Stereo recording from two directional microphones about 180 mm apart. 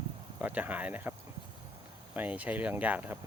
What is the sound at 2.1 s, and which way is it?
Speech, 10° right (ahead or behind).